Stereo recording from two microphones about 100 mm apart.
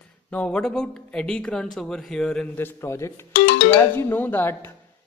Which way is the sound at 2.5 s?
25° left (ahead or behind).